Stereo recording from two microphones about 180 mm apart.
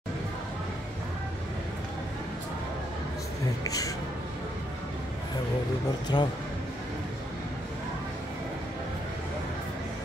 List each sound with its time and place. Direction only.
3.6 s speech: 20° left (ahead or behind)
6.1 s speech: 25° left (ahead or behind)